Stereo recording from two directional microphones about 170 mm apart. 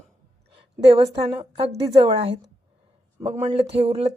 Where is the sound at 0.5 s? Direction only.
35° right (ahead or behind).